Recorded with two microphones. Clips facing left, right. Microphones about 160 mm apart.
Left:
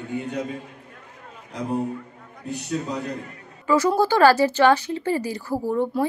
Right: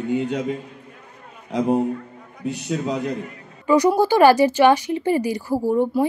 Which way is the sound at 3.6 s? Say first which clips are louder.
Right 3 dB; 15° right (ahead or behind).